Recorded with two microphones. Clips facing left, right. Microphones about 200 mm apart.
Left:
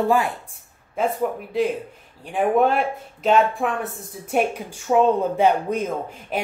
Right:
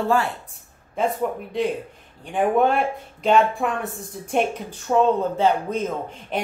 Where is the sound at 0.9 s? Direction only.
5° left (ahead or behind).